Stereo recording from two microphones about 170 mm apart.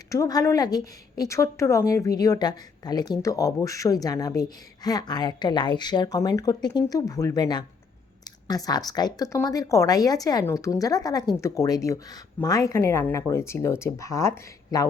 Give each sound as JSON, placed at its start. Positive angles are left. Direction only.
{"t": 0.1, "sound": "a woman's voice", "side_deg": 20}